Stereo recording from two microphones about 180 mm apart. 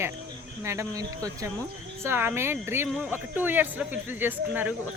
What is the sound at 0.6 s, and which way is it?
Speech, 15° right (ahead or behind).